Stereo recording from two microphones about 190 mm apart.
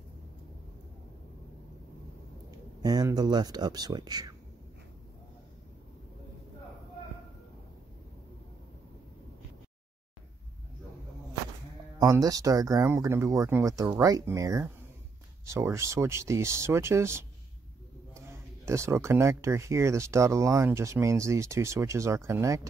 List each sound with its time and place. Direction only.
2.8 s speech: 20° right (ahead or behind)
12.0 s speech: 20° right (ahead or behind)
18.7 s speech: 15° right (ahead or behind)